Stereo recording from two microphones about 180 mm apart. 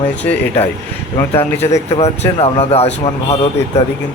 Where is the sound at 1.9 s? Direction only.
35° left (ahead or behind).